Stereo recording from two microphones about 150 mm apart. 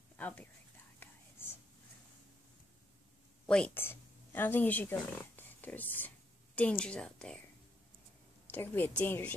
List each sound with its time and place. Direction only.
0.2 s speech: 10° left (ahead or behind)
1.0 s whispering: 15° left (ahead or behind)
3.4 s speech: 5° left (ahead or behind)
8.5 s a woman's voice: 10° left (ahead or behind)